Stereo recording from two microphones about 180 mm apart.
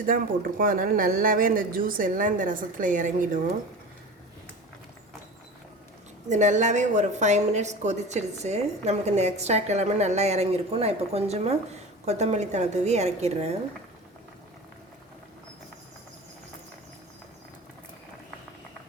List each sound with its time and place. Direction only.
0.1 s a woman's voice: 50° right (ahead or behind)
6.2 s a woman's voice: 40° right (ahead or behind)